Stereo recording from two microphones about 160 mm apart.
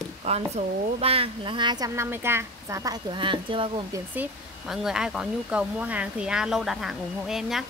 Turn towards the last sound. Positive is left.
turn(degrees=0)  # may be behind; listen again after turning